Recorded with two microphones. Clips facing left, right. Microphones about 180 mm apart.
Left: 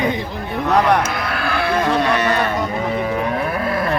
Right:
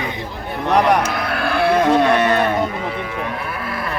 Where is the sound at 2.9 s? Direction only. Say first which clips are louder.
Left 5 dB; 45° left (ahead or behind).